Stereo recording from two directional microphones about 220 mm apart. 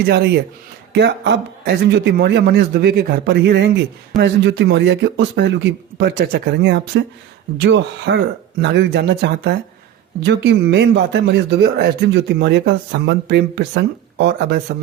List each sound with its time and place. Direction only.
0.0 s speech: 50° right (ahead or behind)